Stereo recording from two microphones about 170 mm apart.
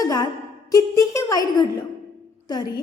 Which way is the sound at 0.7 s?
20° left (ahead or behind).